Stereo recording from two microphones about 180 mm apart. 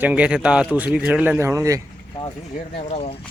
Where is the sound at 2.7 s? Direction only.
35° left (ahead or behind).